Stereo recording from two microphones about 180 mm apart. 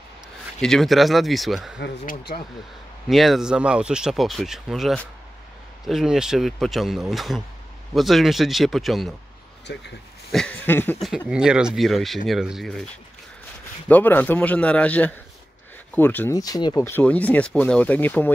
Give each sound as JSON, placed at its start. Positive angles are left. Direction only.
{"t": 0.6, "sound": "speech", "side_deg": 0}
{"t": 2.0, "sound": "speech", "side_deg": 55}
{"t": 3.1, "sound": "speech", "side_deg": 0}
{"t": 9.7, "sound": "speech", "side_deg": 70}
{"t": 10.3, "sound": "speech", "side_deg": 5}
{"t": 11.2, "sound": "speech", "side_deg": -5}
{"t": 13.8, "sound": "speech", "side_deg": 10}